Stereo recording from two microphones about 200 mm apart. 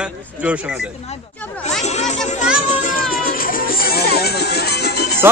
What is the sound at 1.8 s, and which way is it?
Music, 35° left (ahead or behind).